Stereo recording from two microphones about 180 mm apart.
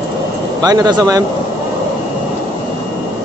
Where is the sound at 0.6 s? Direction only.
20° right (ahead or behind).